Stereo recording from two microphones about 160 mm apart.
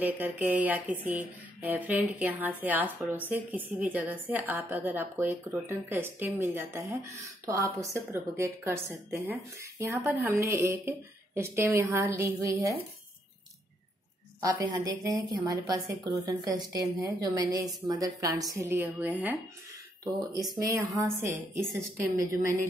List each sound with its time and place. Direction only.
0.0 s speech: 10° right (ahead or behind)
14.4 s a woman's voice: 25° right (ahead or behind)
20.1 s a woman's voice: 25° right (ahead or behind)